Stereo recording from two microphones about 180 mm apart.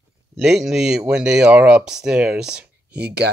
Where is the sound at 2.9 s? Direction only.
65° right (ahead or behind).